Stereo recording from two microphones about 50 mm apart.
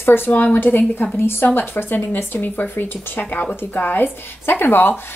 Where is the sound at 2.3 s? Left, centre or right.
Left.